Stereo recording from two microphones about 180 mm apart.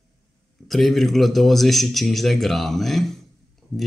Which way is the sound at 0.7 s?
Centre (ahead or behind).